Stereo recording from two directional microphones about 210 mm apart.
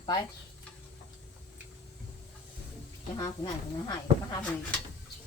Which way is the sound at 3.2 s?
20° left (ahead or behind).